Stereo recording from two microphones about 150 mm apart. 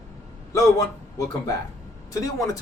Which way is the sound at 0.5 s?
20° left (ahead or behind).